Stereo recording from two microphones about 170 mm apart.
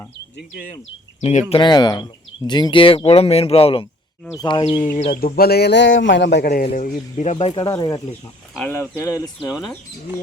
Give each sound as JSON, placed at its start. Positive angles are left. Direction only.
{"t": 0.7, "sound": "speech", "side_deg": 45}
{"t": 1.5, "sound": "speech", "side_deg": 25}
{"t": 5.2, "sound": "a man's voice", "side_deg": 65}
{"t": 6.7, "sound": "speech", "side_deg": 50}
{"t": 7.5, "sound": "speech", "side_deg": 25}